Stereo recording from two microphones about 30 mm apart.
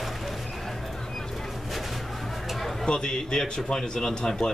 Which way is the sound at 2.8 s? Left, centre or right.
Left.